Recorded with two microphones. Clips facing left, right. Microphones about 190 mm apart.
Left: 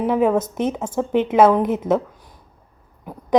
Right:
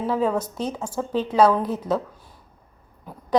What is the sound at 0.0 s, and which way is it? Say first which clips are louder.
A woman's voice: left 5 dB; 20° left (ahead or behind).